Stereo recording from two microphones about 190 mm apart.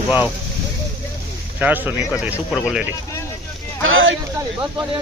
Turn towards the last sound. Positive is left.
turn(degrees=-90)